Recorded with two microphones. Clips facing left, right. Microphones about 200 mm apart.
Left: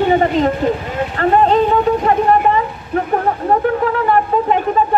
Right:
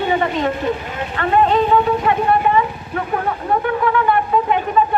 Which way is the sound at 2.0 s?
40° left (ahead or behind).